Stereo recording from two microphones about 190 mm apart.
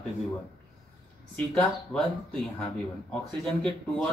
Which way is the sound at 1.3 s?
5° left (ahead or behind).